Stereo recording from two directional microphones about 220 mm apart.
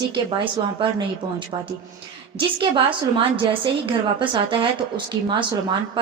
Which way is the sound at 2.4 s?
20° right (ahead or behind).